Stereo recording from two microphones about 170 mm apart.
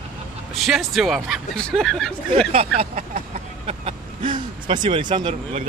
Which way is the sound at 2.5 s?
35° right (ahead or behind).